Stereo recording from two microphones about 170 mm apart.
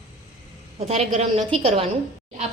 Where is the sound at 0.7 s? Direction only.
35° right (ahead or behind).